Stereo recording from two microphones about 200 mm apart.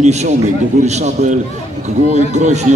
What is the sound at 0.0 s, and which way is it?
A man's voice, 35° right (ahead or behind).